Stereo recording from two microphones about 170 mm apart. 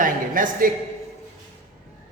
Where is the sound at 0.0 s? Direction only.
55° right (ahead or behind).